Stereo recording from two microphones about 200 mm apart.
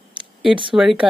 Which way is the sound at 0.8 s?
5° right (ahead or behind).